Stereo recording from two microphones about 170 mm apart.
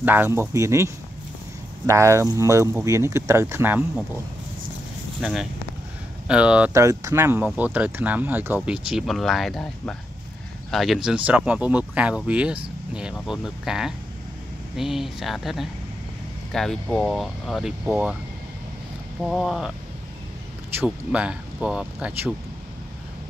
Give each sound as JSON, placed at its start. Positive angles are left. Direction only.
{"t": 0.0, "sound": "speech", "side_deg": -10}
{"t": 5.2, "sound": "speech", "side_deg": -5}
{"t": 6.8, "sound": "speech", "side_deg": -20}
{"t": 19.2, "sound": "speech", "side_deg": 0}
{"t": 20.7, "sound": "speech", "side_deg": -5}